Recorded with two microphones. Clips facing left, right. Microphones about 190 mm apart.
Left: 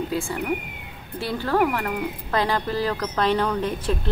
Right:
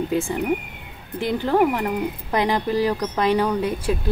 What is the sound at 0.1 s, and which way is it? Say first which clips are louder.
Speech: right 4 dB; 20° right (ahead or behind).